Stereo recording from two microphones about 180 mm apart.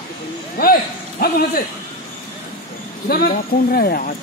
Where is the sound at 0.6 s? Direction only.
55° left (ahead or behind).